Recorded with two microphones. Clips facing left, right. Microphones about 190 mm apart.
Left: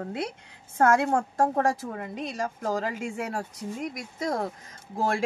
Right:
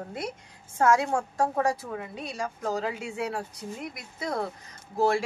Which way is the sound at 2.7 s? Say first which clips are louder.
Even; 50° left (ahead or behind).